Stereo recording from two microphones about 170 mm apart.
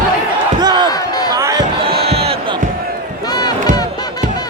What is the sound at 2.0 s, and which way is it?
Crowd, 35° right (ahead or behind).